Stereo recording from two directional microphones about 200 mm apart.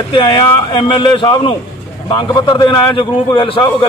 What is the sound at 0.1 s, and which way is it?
A man's voice, 25° left (ahead or behind).